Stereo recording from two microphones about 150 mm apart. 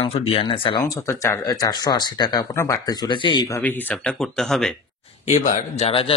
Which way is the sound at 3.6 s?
10° left (ahead or behind).